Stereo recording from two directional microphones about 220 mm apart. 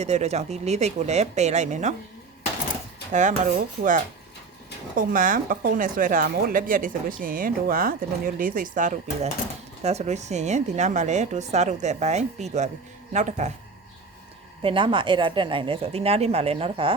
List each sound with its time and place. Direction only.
0.0 s a woman's voice: 30° right (ahead or behind)
3.1 s a woman's voice: 35° right (ahead or behind)
14.6 s speech: 25° right (ahead or behind)